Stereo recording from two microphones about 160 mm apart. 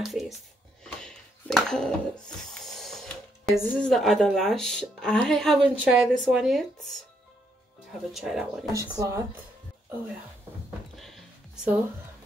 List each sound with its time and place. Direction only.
0.0 s a woman's voice: centre (ahead or behind)
1.0 s a sound: 5° left (ahead or behind)
5.6 s a woman's voice: 5° right (ahead or behind)
8.1 s a woman's voice: centre (ahead or behind)
8.7 s speech: 20° right (ahead or behind)
11.0 s music: centre (ahead or behind)